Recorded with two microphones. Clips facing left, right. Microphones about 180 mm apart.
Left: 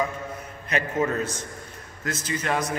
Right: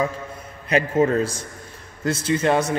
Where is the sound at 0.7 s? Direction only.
30° right (ahead or behind).